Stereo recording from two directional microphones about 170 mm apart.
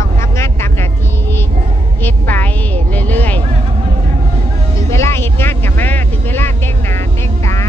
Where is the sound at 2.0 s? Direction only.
10° left (ahead or behind).